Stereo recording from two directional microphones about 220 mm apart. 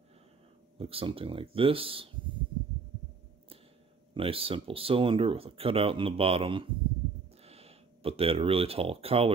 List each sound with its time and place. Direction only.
0.7 s speech: 25° right (ahead or behind)
4.1 s speech: 25° right (ahead or behind)